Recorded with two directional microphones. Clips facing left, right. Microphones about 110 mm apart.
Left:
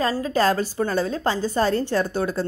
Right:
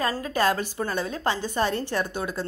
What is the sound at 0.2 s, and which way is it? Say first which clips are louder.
A woman's voice: left 4 dB; 30° left (ahead or behind).